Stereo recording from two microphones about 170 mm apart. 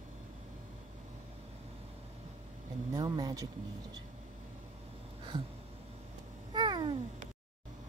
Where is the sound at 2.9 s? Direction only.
25° right (ahead or behind).